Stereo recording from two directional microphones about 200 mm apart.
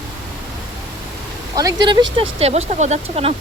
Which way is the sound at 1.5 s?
15° right (ahead or behind).